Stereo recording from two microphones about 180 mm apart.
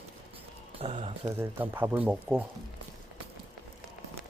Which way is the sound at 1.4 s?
10° right (ahead or behind).